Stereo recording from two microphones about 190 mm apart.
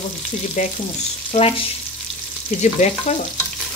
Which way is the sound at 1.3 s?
30° left (ahead or behind).